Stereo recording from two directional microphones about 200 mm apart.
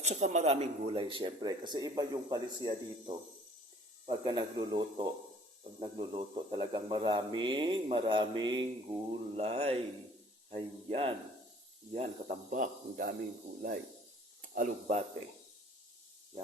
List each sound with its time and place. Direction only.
0.0 s speech: 35° right (ahead or behind)
9.3 s a man's voice: 30° right (ahead or behind)